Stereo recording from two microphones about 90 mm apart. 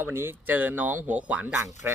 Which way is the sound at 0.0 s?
25° right (ahead or behind).